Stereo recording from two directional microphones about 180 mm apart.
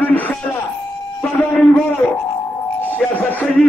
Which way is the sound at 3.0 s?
10° left (ahead or behind).